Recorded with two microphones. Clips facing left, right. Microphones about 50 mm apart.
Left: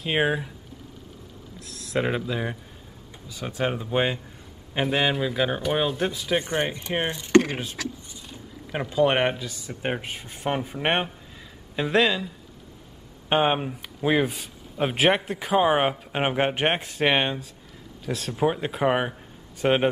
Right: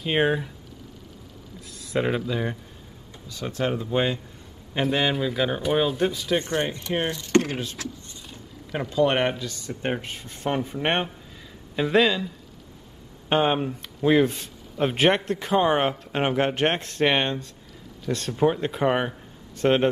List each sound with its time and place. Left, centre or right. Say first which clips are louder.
0.0 s speech: right 1 dB; centre
1.7 s speech: right 1 dB; centre
4.7 s speech: even; centre
6.5 s speech: even; centre
7.3 s speech: left 3 dB; left
8.9 s speech: even; centre
13.3 s speech: even; centre